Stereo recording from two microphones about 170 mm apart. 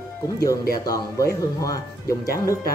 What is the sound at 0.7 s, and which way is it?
Speech, 20° left (ahead or behind).